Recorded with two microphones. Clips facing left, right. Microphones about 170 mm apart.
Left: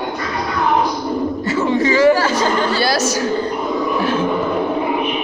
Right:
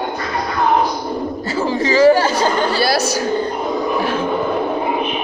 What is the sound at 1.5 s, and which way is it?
Chatter, 30° right (ahead or behind).